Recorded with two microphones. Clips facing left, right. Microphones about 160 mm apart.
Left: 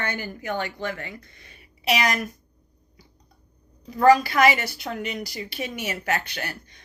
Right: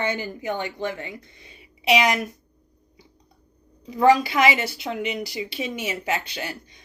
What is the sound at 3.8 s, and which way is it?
Speech, 15° right (ahead or behind).